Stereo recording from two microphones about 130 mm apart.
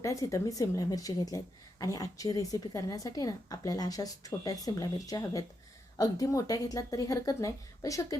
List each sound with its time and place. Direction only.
0.0 s a woman's voice: 25° left (ahead or behind)